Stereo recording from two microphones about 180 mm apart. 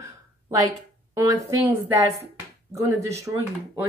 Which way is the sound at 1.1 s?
20° right (ahead or behind).